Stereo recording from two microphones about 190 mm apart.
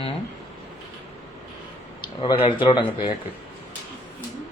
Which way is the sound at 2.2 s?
25° left (ahead or behind).